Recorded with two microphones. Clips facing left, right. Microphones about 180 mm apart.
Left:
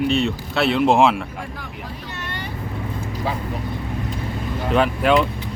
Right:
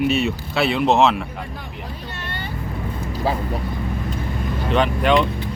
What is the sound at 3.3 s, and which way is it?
Speech, 35° right (ahead or behind).